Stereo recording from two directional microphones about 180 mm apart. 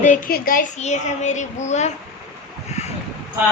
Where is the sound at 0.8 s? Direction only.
40° left (ahead or behind).